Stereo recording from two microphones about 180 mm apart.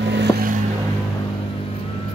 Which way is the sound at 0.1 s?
70° right (ahead or behind).